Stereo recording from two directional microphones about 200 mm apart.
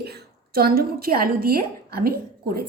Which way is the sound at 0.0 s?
55° right (ahead or behind).